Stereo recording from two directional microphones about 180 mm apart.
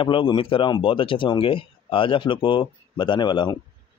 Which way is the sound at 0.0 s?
30° left (ahead or behind).